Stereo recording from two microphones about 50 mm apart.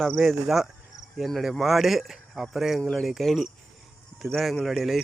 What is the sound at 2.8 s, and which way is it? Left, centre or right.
Speech, centre.